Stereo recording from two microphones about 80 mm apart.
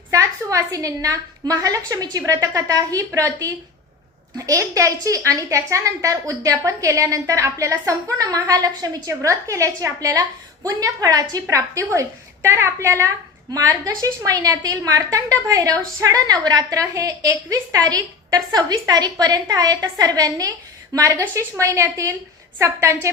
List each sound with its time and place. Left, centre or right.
0.1 s a woman's voice: right
11.4 s a woman's voice: right
13.5 s a woman's voice: right